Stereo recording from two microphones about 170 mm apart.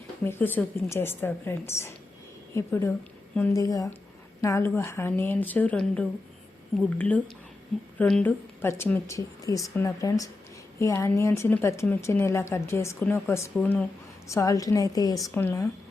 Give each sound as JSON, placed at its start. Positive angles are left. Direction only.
{"t": 0.3, "sound": "a woman's voice", "side_deg": 10}
{"t": 7.9, "sound": "a woman's voice", "side_deg": 5}